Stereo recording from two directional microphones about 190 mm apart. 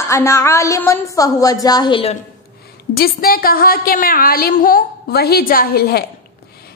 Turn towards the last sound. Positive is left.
turn(degrees=55)  # may be behind; listen again after turning